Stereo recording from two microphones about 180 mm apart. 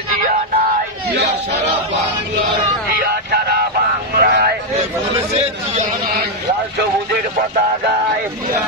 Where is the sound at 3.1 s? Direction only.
60° right (ahead or behind).